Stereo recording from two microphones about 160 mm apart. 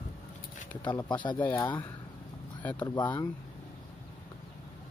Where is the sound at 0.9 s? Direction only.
25° left (ahead or behind).